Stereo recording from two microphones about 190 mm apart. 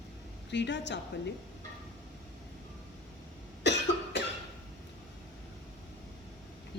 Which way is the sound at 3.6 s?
65° left (ahead or behind).